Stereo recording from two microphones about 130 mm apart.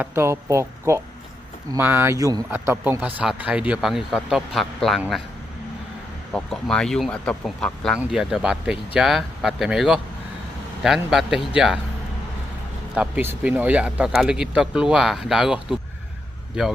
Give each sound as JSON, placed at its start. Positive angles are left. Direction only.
{"t": 0.0, "sound": "speech", "side_deg": -20}
{"t": 6.3, "sound": "speech", "side_deg": 5}
{"t": 12.9, "sound": "speech", "side_deg": -10}